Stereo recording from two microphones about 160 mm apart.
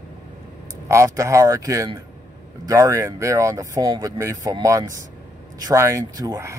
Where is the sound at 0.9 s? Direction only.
20° right (ahead or behind).